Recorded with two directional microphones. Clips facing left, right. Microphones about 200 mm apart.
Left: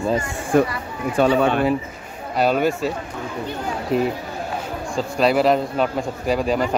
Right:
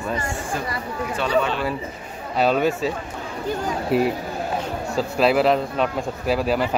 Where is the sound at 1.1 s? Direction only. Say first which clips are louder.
Left 5 dB; 45° left (ahead or behind).